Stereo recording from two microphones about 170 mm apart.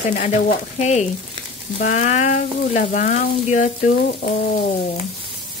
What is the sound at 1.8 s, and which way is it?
Frying, 45° left (ahead or behind).